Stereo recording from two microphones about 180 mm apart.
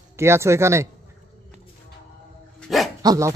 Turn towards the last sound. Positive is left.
turn(degrees=-15)  # may be behind; listen again after turning